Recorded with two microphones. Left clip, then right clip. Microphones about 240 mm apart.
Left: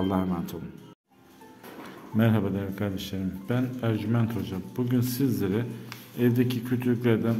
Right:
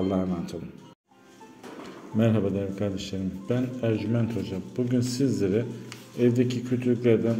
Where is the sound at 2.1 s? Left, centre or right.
Centre.